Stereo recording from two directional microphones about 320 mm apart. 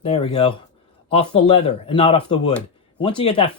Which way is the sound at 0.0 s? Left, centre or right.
Centre.